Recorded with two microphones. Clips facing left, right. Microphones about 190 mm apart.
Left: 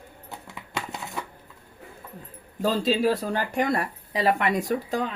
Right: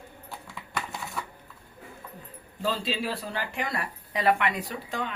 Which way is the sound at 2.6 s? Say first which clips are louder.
Left 7 dB; 40° left (ahead or behind).